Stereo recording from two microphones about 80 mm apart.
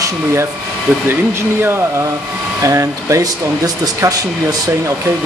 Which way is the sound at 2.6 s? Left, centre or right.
Right.